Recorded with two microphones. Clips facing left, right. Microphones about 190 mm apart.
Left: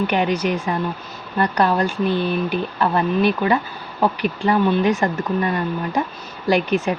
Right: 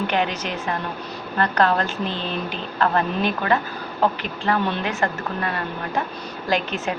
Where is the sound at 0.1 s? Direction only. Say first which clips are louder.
Left 4 dB; 15° left (ahead or behind).